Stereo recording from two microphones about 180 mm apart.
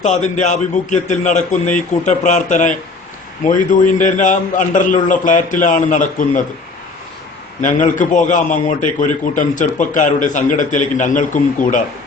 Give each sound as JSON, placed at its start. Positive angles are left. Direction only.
{"t": 0.0, "sound": "a man's voice", "side_deg": 40}
{"t": 7.6, "sound": "a man's voice", "side_deg": 45}